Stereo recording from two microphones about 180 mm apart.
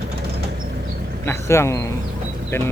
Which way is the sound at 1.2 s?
15° left (ahead or behind).